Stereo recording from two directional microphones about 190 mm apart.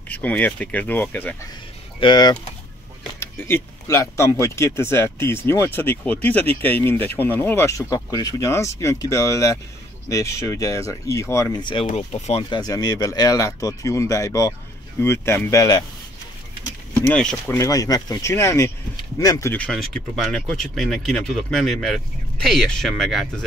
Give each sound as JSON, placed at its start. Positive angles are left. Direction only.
{"t": 0.1, "sound": "speech", "side_deg": 10}
{"t": 2.0, "sound": "speech", "side_deg": 25}
{"t": 3.2, "sound": "speech", "side_deg": 10}
{"t": 17.0, "sound": "speech", "side_deg": 5}
{"t": 17.6, "sound": "speech", "side_deg": 20}
{"t": 19.5, "sound": "speech", "side_deg": 5}